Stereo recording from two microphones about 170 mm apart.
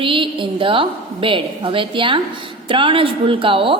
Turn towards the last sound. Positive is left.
turn(degrees=-30)  # may be behind; listen again after turning